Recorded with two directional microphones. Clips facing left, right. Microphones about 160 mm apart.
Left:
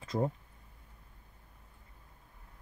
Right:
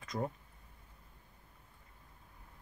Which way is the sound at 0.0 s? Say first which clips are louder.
Left 5 dB; 30° left (ahead or behind).